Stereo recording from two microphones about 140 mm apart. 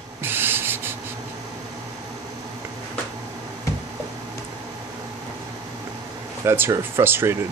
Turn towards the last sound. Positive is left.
turn(degrees=-15)  # may be behind; listen again after turning